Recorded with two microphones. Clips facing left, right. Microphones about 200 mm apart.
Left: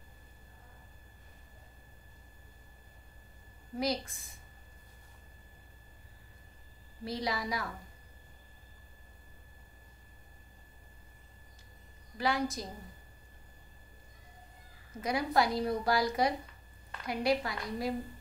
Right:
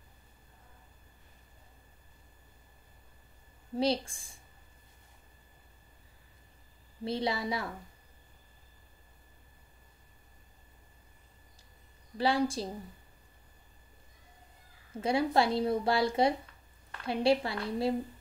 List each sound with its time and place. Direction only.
3.7 s a woman's voice: 30° right (ahead or behind)
7.1 s a woman's voice: 25° right (ahead or behind)
12.2 s a woman's voice: 30° right (ahead or behind)
14.9 s a woman's voice: 30° right (ahead or behind)